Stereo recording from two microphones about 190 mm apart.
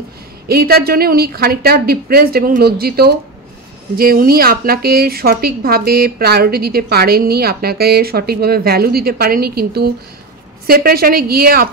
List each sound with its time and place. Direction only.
0.5 s speech: 55° right (ahead or behind)